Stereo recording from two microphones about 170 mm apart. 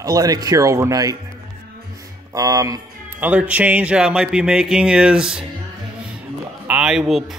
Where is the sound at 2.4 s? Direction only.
20° right (ahead or behind).